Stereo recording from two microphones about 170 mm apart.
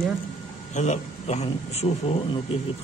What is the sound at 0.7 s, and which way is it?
Speech, 40° left (ahead or behind).